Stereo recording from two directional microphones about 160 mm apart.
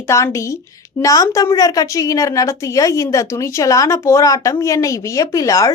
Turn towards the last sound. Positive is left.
turn(degrees=20)  # may be behind; listen again after turning